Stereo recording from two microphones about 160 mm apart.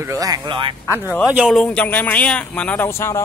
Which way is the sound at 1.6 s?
10° left (ahead or behind).